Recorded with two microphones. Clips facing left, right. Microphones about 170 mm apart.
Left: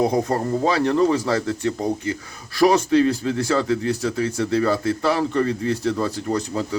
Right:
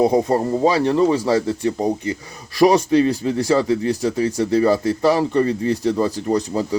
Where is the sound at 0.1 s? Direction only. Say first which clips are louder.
Right 4 dB; 10° right (ahead or behind).